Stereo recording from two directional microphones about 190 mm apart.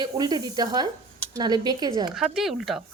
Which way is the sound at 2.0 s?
5° right (ahead or behind).